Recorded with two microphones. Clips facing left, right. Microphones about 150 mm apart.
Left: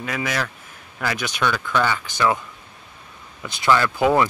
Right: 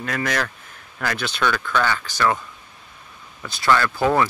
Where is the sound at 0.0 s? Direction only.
5° left (ahead or behind).